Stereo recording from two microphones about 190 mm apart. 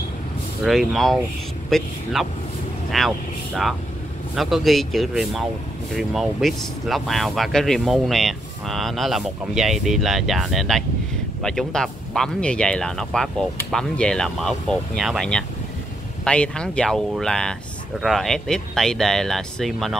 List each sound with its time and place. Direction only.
0.7 s speech: centre (ahead or behind)